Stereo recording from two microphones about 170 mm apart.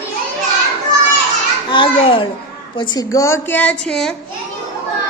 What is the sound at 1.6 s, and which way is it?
A child's voice, 30° left (ahead or behind).